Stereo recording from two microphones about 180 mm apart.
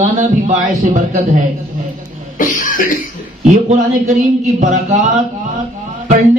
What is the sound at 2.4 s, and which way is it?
Cough, 50° left (ahead or behind).